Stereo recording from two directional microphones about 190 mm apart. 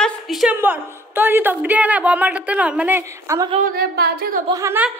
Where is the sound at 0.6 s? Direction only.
10° right (ahead or behind).